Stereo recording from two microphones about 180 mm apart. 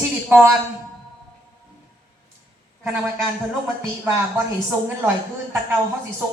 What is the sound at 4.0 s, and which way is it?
Speech, 10° right (ahead or behind).